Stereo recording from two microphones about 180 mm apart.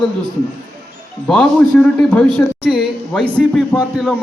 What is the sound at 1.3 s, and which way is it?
A man's voice, 5° left (ahead or behind).